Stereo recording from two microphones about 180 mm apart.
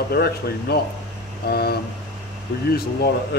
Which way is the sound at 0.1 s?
60° left (ahead or behind).